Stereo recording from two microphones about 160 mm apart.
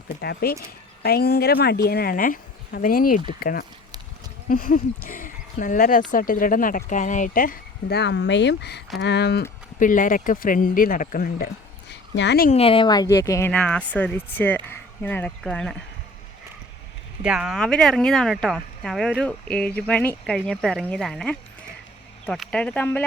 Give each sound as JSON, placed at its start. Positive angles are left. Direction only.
{"t": 0.2, "sound": "speech", "side_deg": 80}
{"t": 9.7, "sound": "speech", "side_deg": 55}
{"t": 12.5, "sound": "speech", "side_deg": 35}
{"t": 13.5, "sound": "speech", "side_deg": 10}
{"t": 17.2, "sound": "speech", "side_deg": -5}